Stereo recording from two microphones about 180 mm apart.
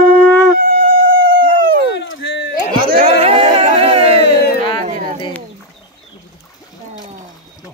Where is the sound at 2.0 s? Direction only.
90° left.